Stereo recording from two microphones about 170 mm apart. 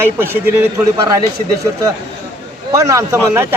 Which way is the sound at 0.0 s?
15° right (ahead or behind).